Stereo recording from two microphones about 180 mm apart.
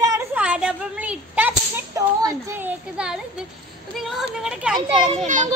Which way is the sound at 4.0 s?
Centre (ahead or behind).